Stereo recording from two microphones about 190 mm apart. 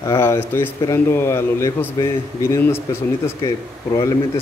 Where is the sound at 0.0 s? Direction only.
15° left (ahead or behind).